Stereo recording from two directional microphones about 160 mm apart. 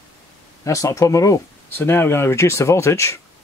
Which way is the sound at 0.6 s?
20° left (ahead or behind).